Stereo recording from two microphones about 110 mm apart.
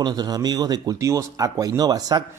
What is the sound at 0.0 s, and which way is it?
Speech, 40° right (ahead or behind).